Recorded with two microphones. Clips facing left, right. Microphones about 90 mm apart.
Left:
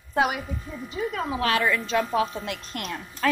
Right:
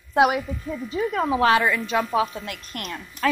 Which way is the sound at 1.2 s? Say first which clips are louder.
Right 6 dB; 20° right (ahead or behind).